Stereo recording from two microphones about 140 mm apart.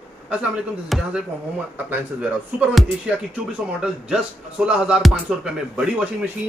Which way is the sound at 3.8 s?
5° right (ahead or behind).